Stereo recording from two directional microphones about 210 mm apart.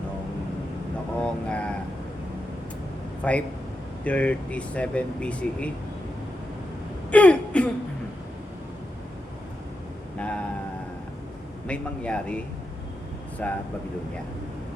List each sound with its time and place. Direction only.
1.2 s vehicle: 5° left (ahead or behind)
3.2 s speech: 5° left (ahead or behind)
7.1 s throat clearing: 5° left (ahead or behind)
10.2 s a sound: 5° left (ahead or behind)
11.6 s speech: 5° left (ahead or behind)
13.4 s speech: 5° left (ahead or behind)